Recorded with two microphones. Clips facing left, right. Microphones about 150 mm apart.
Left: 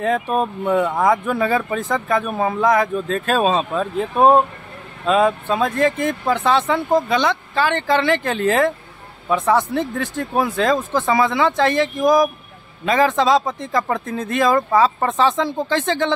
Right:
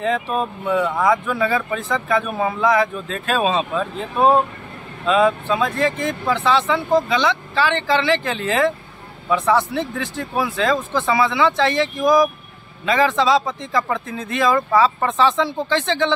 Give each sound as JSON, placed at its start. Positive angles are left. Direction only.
{"t": 0.0, "sound": "speech", "side_deg": 45}